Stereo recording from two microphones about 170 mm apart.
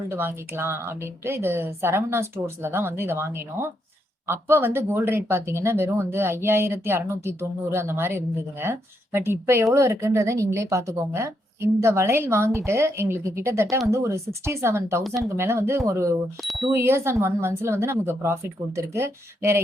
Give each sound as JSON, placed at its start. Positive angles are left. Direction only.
{"t": 0.1, "sound": "speech", "side_deg": -15}
{"t": 16.4, "sound": "speech", "side_deg": 0}
{"t": 16.7, "sound": "speech", "side_deg": -15}